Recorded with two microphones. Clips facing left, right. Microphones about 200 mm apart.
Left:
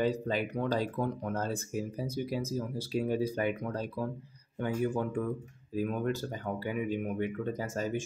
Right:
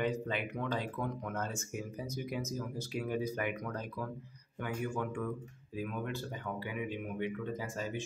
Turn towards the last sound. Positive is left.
turn(degrees=45)  # may be behind; listen again after turning